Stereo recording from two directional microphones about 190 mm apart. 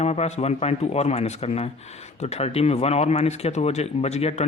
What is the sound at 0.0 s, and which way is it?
Speech, 35° left (ahead or behind).